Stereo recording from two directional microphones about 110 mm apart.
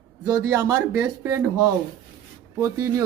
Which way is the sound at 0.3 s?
35° right (ahead or behind).